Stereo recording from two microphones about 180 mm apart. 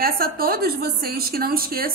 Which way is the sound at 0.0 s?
55° right (ahead or behind).